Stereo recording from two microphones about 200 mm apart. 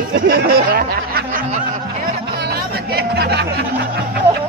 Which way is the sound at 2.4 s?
50° right (ahead or behind).